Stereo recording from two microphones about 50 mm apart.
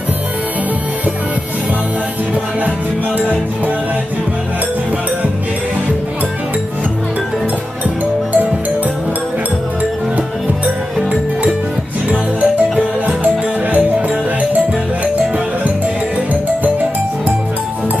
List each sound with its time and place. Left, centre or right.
3.2 s music: right
11.0 s music: centre